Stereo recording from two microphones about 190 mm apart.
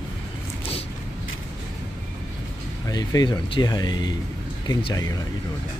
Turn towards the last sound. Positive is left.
turn(degrees=20)  # may be behind; listen again after turning